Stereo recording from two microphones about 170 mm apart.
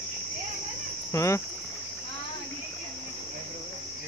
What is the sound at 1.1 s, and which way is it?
Cricket, 15° left (ahead or behind).